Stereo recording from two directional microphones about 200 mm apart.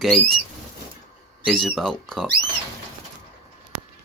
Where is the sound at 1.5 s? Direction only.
Centre (ahead or behind).